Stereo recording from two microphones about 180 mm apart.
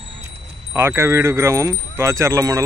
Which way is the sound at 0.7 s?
15° right (ahead or behind).